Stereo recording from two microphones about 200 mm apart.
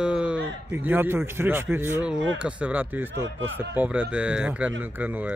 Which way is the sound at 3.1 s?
70° right (ahead or behind).